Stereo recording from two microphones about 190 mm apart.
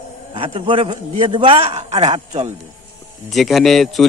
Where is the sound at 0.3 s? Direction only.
30° right (ahead or behind).